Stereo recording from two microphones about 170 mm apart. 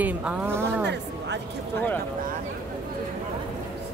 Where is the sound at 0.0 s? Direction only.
5° right (ahead or behind).